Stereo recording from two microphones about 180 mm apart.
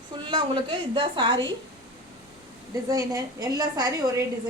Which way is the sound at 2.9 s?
20° right (ahead or behind).